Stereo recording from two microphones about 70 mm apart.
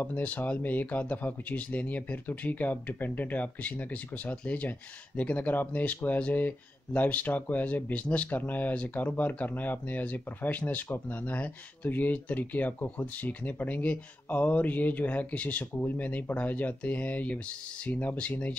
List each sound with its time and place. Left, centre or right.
0.0 s speech: left